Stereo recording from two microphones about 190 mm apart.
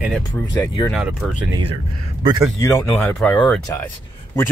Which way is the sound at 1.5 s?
30° right (ahead or behind).